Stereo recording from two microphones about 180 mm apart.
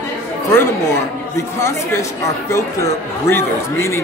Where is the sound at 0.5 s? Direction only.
15° left (ahead or behind).